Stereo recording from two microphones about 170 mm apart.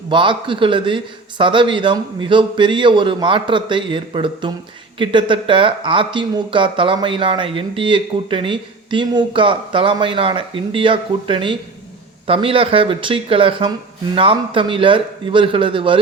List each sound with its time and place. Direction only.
0.1 s speech: 30° right (ahead or behind)